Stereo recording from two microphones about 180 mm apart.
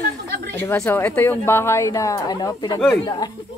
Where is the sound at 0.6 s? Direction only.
10° left (ahead or behind).